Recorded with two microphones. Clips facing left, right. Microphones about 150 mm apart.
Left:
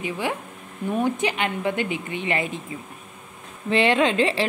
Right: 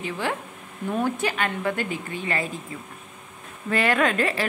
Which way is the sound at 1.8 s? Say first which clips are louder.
Left 2 dB; 45° right (ahead or behind).